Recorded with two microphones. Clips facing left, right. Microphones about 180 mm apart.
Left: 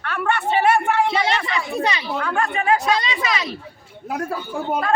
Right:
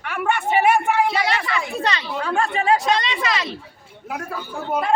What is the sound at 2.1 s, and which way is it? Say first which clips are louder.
Speech: right 1 dB; 30° right (ahead or behind).